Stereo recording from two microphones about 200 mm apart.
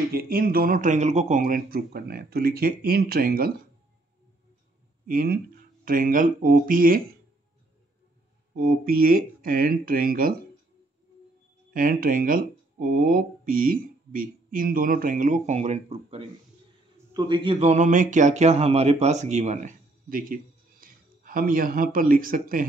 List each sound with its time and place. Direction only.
0.1 s speech: 50° right (ahead or behind)
5.0 s speech: 50° right (ahead or behind)
8.5 s speech: 50° right (ahead or behind)
11.7 s speech: 45° right (ahead or behind)